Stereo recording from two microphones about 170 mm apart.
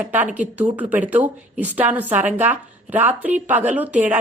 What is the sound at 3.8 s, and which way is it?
Speech, 45° right (ahead or behind).